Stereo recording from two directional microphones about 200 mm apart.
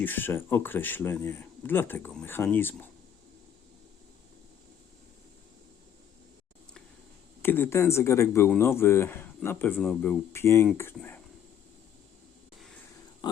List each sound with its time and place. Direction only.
0.0 s speech: 10° left (ahead or behind)
7.4 s speech: 10° left (ahead or behind)
13.2 s pig: 20° left (ahead or behind)